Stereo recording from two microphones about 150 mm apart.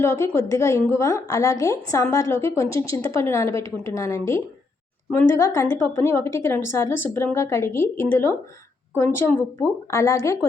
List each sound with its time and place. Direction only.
0.0 s a woman's voice: 20° left (ahead or behind)